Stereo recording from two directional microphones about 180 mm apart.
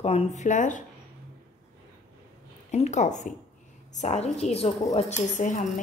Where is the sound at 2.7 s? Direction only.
40° left (ahead or behind).